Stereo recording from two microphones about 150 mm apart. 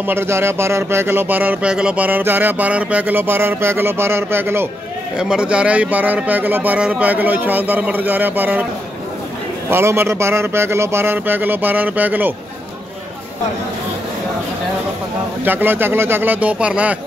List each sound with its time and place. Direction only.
0.0 s speech: 15° right (ahead or behind)
5.1 s speech: 5° right (ahead or behind)
9.7 s speech: 15° right (ahead or behind)
15.4 s speech: 15° right (ahead or behind)